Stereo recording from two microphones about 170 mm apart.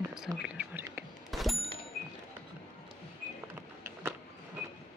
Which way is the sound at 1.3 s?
Centre (ahead or behind).